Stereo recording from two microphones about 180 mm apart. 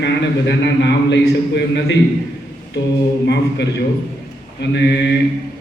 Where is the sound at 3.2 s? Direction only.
70° left (ahead or behind).